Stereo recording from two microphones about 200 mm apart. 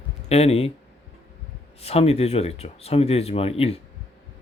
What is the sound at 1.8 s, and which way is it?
Speech, 30° left (ahead or behind).